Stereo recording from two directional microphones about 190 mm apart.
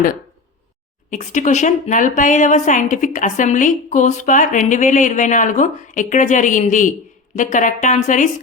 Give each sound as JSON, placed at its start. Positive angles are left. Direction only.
{"t": 1.1, "sound": "a woman's voice", "side_deg": 40}